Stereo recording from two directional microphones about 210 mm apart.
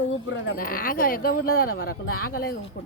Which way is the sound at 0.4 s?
45° left (ahead or behind).